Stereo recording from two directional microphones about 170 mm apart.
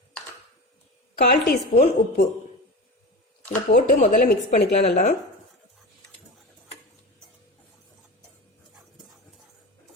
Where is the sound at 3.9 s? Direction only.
45° left (ahead or behind).